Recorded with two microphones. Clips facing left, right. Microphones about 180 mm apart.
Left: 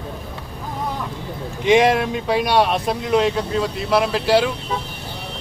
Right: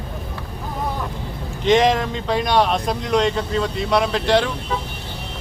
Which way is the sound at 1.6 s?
10° left (ahead or behind).